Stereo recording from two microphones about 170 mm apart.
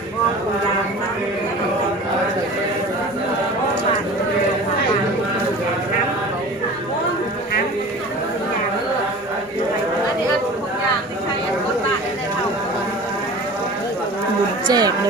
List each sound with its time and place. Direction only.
14.7 s speech: 25° right (ahead or behind)